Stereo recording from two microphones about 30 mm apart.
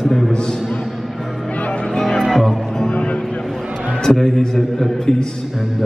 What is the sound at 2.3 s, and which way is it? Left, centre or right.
Music, centre.